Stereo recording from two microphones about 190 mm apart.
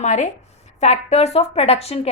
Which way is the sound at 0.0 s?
40° left (ahead or behind).